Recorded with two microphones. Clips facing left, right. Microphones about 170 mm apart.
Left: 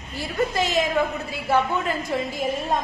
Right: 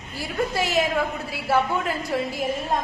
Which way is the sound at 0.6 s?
10° right (ahead or behind).